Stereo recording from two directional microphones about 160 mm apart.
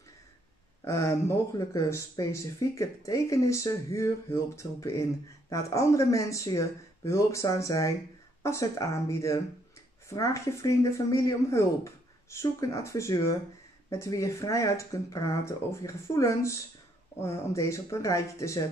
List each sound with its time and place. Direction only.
0.8 s speech: 20° left (ahead or behind)